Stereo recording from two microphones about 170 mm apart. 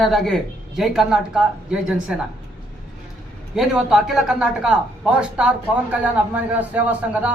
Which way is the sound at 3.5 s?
5° right (ahead or behind).